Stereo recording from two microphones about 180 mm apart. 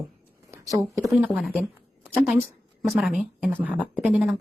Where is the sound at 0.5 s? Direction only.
20° right (ahead or behind).